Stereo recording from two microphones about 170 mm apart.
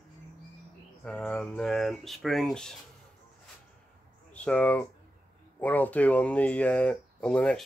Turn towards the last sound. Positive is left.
turn(degrees=5)  # may be behind; listen again after turning